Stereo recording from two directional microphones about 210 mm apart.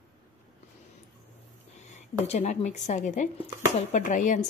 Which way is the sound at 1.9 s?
30° left (ahead or behind).